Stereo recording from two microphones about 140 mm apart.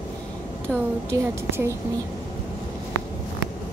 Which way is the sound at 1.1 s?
20° right (ahead or behind).